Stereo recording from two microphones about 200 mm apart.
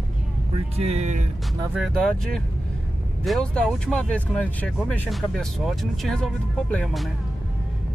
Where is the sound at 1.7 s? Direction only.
Centre (ahead or behind).